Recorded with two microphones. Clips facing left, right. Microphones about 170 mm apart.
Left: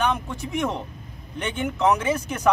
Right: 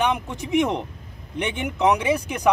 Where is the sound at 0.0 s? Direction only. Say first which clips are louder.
Right 1 dB; 15° right (ahead or behind).